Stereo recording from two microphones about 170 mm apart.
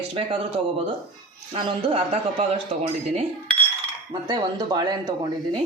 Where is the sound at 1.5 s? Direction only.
35° right (ahead or behind).